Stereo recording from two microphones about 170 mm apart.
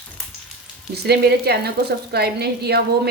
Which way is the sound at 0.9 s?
70° right (ahead or behind).